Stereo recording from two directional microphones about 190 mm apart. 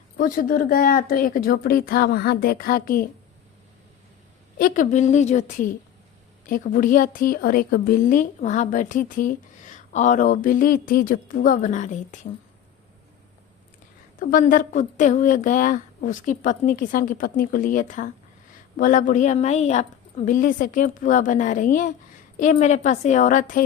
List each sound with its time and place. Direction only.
0.2 s a woman's voice: 45° left (ahead or behind)
4.5 s a woman's voice: 45° left (ahead or behind)
14.2 s a woman's voice: 45° left (ahead or behind)